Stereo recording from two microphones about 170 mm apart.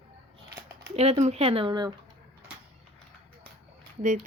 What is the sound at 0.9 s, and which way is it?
Speech, 40° right (ahead or behind).